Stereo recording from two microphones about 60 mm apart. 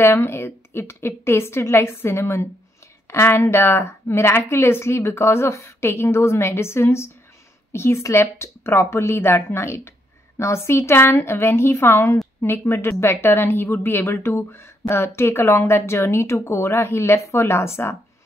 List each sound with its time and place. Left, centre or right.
0.0 s a woman's voice: left